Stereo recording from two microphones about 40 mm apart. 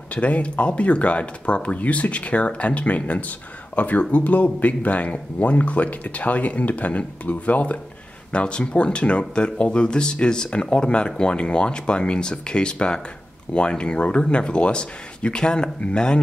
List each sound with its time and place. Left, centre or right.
0.1 s speech: left